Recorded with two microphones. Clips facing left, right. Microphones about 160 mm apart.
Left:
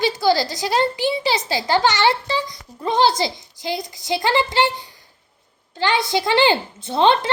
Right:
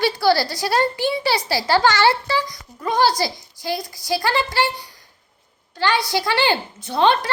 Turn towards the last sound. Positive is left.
turn(degrees=20)  # may be behind; listen again after turning